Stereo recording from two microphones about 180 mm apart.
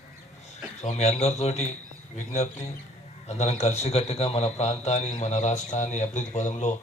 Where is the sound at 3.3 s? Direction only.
40° left (ahead or behind).